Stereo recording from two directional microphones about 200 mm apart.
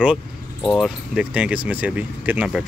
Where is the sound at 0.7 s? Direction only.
Centre (ahead or behind).